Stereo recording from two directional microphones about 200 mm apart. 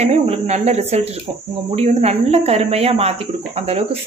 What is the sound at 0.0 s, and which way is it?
Speech, 30° right (ahead or behind).